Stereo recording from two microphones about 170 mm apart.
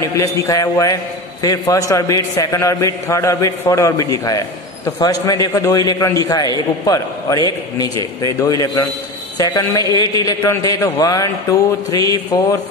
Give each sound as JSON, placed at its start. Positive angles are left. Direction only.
{"t": 0.0, "sound": "a man's voice", "side_deg": 20}